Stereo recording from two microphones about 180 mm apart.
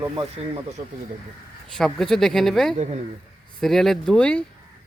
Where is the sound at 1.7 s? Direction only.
5° left (ahead or behind).